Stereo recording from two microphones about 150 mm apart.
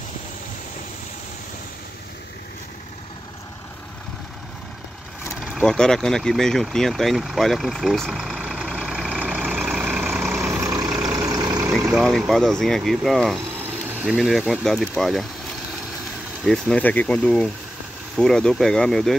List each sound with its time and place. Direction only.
5.4 s vehicle: 5° left (ahead or behind)
10.4 s vehicle: 20° right (ahead or behind)
11.9 s speech: centre (ahead or behind)
16.4 s speech: centre (ahead or behind)